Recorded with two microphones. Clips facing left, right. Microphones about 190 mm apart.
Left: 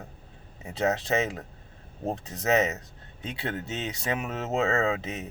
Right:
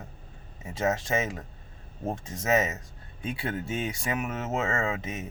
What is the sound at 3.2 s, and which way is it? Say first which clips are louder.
Speech: right 1 dB; 25° left (ahead or behind).